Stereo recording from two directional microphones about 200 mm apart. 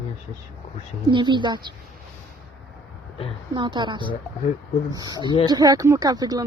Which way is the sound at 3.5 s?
20° right (ahead or behind).